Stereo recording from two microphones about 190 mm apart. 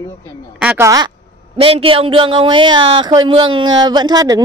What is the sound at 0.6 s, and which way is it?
Speech, 5° right (ahead or behind).